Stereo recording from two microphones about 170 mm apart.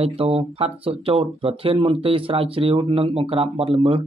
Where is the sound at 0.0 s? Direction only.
35° right (ahead or behind).